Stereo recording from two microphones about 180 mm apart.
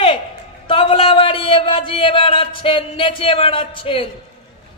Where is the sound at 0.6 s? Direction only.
30° left (ahead or behind).